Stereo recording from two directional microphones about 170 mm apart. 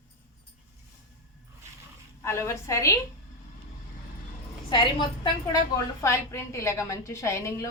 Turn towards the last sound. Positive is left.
turn(degrees=15)  # may be behind; listen again after turning